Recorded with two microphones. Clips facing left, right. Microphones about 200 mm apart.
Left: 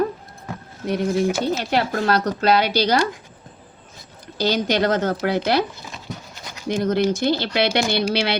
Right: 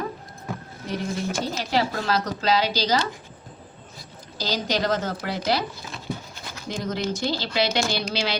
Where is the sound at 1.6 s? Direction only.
60° left (ahead or behind).